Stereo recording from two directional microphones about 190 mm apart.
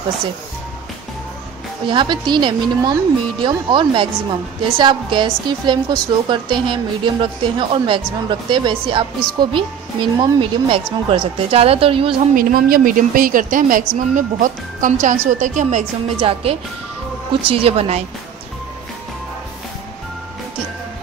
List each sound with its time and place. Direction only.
1.9 s a woman's voice: 25° right (ahead or behind)
12.4 s a woman's voice: 50° right (ahead or behind); by 18.0 s 35° right (ahead or behind)